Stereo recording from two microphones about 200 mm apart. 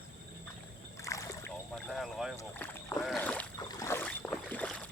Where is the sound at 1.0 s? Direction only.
15° left (ahead or behind).